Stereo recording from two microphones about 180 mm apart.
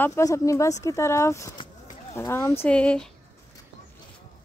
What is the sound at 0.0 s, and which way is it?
Speech, 15° left (ahead or behind).